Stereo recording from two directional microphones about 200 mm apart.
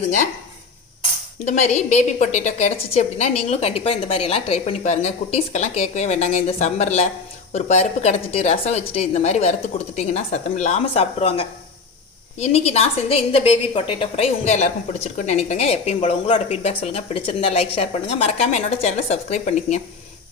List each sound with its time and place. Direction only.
1.5 s a woman's voice: 35° left (ahead or behind)